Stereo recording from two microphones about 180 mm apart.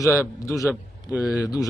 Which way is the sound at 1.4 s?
20° left (ahead or behind).